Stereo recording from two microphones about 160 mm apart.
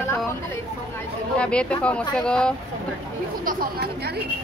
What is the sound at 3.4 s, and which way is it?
Speech, 60° right (ahead or behind).